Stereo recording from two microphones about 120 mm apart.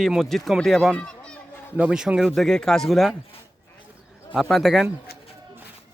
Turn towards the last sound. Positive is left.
turn(degrees=-5)  # may be behind; listen again after turning